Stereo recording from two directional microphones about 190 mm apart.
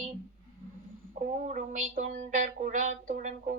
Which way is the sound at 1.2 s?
40° right (ahead or behind).